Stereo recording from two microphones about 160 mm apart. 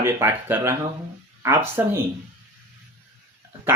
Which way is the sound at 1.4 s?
15° right (ahead or behind).